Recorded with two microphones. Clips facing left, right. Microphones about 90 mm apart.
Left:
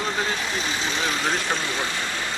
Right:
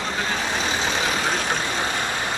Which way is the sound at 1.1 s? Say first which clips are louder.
Right 1 dB; 15° right (ahead or behind).